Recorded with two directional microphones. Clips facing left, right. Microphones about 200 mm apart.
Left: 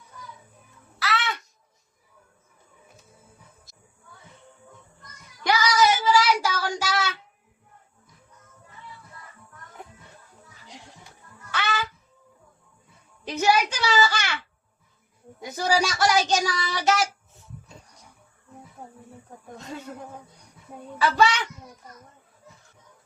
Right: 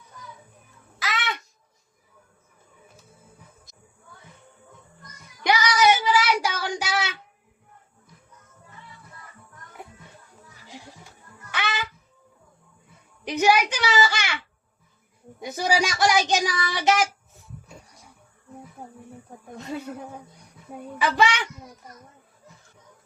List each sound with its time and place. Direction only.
0.9 s music: 15° right (ahead or behind)
5.4 s child singing: 15° right (ahead or behind)
11.5 s music: 15° right (ahead or behind)
13.2 s a sound: 15° right (ahead or behind)
15.4 s a child's voice: 15° right (ahead or behind)
21.0 s a child's voice: 15° right (ahead or behind)